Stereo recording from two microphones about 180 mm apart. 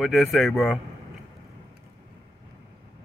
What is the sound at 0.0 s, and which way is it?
Speech, centre (ahead or behind).